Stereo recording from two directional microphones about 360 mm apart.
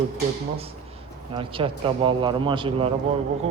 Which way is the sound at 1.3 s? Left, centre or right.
Centre.